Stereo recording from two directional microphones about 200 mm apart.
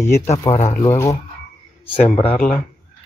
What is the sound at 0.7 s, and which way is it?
Speech, 15° left (ahead or behind).